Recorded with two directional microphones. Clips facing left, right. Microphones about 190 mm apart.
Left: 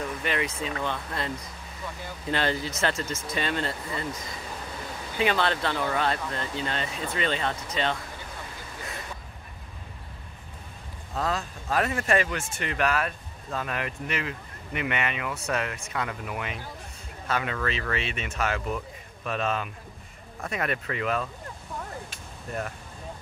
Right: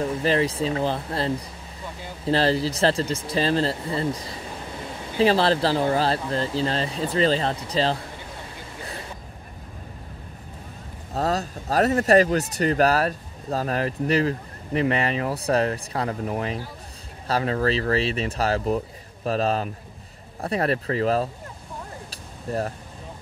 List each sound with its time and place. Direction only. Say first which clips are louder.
0.0 s a man's voice: right 7 dB; 30° right (ahead or behind)
11.1 s a man's voice: right 5 dB; 40° right (ahead or behind)
22.1 s a sound: right 11 dB; 35° right (ahead or behind)